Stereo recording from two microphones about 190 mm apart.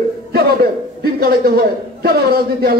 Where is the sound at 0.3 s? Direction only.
55° right (ahead or behind).